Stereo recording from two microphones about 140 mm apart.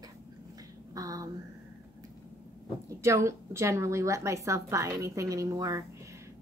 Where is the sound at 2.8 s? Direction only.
20° right (ahead or behind).